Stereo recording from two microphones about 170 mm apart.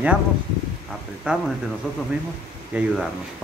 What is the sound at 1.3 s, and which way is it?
Speech, 5° right (ahead or behind).